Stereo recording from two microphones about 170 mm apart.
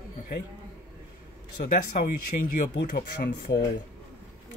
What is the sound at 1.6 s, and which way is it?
Speech, 55° left (ahead or behind).